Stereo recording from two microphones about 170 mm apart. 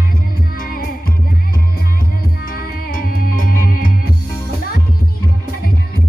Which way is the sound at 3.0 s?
55° left (ahead or behind).